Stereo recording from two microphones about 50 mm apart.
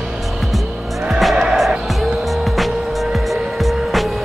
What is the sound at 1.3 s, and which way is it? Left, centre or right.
Music, centre.